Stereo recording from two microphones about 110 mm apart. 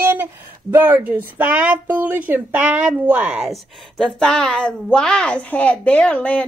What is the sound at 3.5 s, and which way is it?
A woman's voice, 5° left (ahead or behind).